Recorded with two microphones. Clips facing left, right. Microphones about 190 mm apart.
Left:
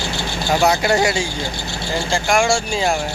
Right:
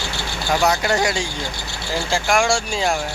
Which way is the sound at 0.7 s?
10° left (ahead or behind).